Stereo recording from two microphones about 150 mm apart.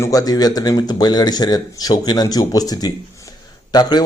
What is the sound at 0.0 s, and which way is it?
A man's voice, 25° left (ahead or behind).